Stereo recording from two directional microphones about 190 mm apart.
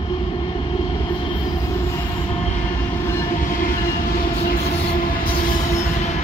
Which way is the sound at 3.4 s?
45° left (ahead or behind).